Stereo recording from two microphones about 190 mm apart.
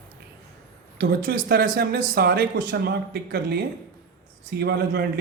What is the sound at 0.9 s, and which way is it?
Speech, 55° right (ahead or behind).